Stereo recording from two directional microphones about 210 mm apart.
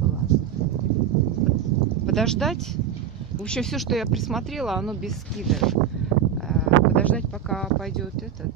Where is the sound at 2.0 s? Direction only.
Centre (ahead or behind).